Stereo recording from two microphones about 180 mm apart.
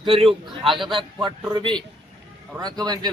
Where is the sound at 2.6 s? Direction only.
20° right (ahead or behind).